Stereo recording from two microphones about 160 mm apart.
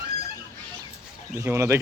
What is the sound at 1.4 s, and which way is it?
Speech, 15° right (ahead or behind).